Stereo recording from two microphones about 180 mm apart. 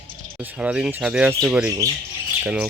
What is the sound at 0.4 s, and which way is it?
Speech, 5° right (ahead or behind).